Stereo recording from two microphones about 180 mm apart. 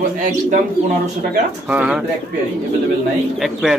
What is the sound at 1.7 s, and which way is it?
Speech, 10° right (ahead or behind).